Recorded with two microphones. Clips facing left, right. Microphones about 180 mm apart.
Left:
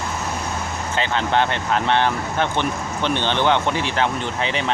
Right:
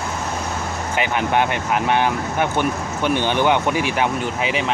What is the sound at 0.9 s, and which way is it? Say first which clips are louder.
Speech: right 1 dB; 15° right (ahead or behind).